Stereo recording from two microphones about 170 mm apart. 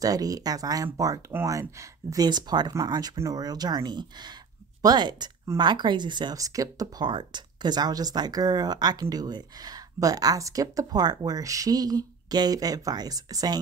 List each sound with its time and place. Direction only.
0.0 s speech: 20° right (ahead or behind)